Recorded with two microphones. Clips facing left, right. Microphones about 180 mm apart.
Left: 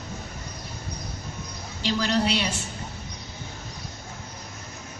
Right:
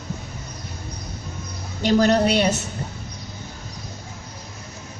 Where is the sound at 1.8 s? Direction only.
50° right (ahead or behind).